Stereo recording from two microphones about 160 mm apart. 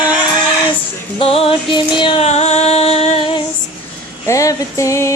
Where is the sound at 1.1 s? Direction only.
35° left (ahead or behind).